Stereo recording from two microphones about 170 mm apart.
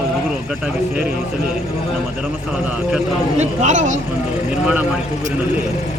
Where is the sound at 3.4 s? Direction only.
45° right (ahead or behind).